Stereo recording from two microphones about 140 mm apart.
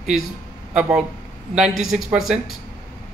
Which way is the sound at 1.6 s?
Centre (ahead or behind).